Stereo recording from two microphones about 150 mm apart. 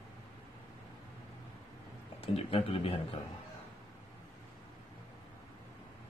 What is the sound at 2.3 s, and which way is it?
Speech, 40° left (ahead or behind).